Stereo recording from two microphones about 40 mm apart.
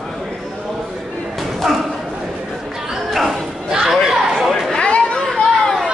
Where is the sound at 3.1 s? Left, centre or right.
Centre.